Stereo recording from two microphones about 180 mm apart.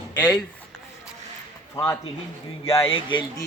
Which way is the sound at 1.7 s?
15° left (ahead or behind).